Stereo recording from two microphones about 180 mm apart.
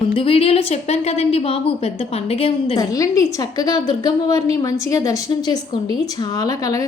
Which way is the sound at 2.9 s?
20° left (ahead or behind).